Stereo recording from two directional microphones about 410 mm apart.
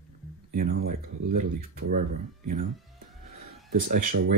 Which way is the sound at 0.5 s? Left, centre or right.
Centre.